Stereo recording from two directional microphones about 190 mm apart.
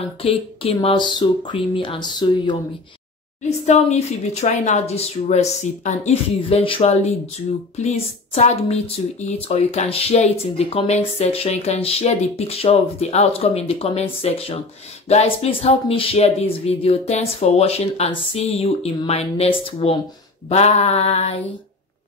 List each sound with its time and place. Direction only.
0.2 s speech: 30° left (ahead or behind)
3.4 s speech: 35° left (ahead or behind)